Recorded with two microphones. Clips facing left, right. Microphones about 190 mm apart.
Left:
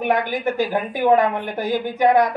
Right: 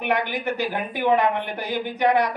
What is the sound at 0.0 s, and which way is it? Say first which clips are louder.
A woman's voice: left 4 dB; 45° left (ahead or behind).